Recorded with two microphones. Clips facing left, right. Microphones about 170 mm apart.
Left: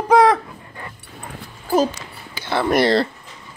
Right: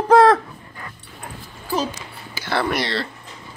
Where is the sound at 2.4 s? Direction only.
15° left (ahead or behind).